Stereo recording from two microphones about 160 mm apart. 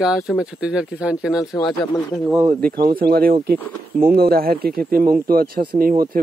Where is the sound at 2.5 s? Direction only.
70° right (ahead or behind).